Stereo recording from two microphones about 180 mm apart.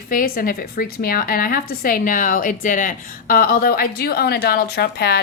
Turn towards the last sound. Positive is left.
turn(degrees=60)  # may be behind; listen again after turning